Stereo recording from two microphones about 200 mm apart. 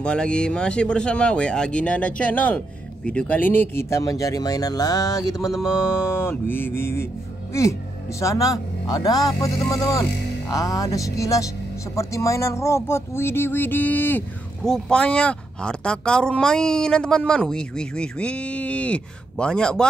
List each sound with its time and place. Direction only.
0.0 s speech: 5° left (ahead or behind)
8.2 s speech: 15° left (ahead or behind)